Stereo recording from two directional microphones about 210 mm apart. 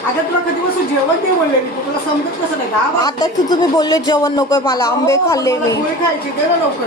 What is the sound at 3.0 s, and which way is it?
Speech, 20° left (ahead or behind).